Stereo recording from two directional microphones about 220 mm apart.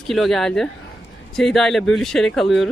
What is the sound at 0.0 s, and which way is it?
Speech, centre (ahead or behind).